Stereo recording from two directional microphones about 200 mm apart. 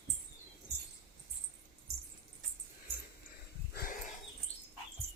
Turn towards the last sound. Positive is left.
turn(degrees=45)  # may be behind; listen again after turning